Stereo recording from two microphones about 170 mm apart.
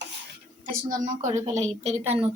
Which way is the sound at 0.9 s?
50° right (ahead or behind).